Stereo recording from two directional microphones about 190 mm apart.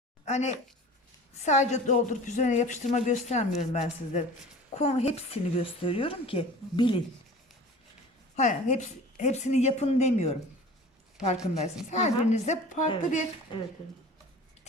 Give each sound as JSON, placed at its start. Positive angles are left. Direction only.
{"t": 0.3, "sound": "speech", "side_deg": 35}
{"t": 8.4, "sound": "speech", "side_deg": 40}
{"t": 11.9, "sound": "speech", "side_deg": 35}
{"t": 13.5, "sound": "speech", "side_deg": 25}